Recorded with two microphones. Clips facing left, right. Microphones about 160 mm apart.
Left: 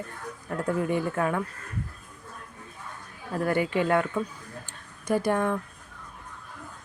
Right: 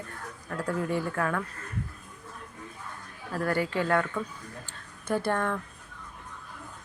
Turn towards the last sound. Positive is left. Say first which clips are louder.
# left 3 dB
turn(degrees=15)  # may be behind; listen again after turning